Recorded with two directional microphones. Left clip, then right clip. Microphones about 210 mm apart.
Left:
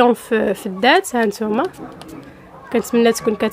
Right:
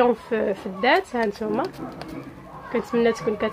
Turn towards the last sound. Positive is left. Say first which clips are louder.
# left 6 dB
turn(degrees=50)  # may be behind; listen again after turning